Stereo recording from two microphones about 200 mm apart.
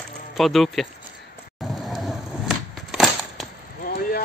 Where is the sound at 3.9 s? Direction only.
45° left (ahead or behind).